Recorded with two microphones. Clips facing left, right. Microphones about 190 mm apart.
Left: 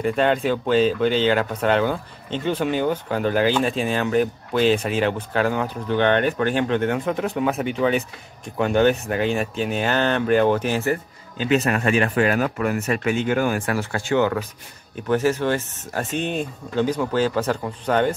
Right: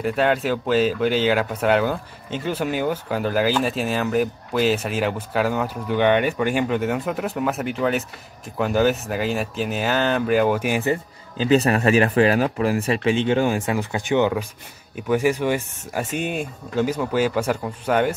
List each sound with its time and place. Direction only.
0.0 s speech: 5° right (ahead or behind)
11.3 s speech: 35° right (ahead or behind); by 18.1 s 10° right (ahead or behind)